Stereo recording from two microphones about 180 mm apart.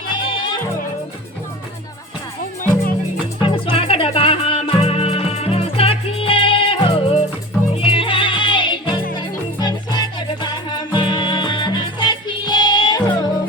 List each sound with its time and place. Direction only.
0.1 s music: 25° left (ahead or behind)
3.5 s music: 30° left (ahead or behind)